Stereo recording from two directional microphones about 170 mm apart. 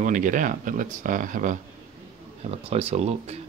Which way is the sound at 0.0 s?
50° right (ahead or behind).